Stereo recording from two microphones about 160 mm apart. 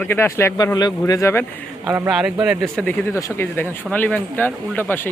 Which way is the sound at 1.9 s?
5° right (ahead or behind).